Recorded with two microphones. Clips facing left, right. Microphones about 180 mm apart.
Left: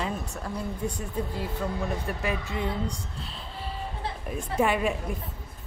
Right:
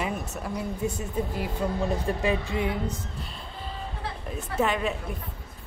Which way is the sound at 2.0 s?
30° right (ahead or behind).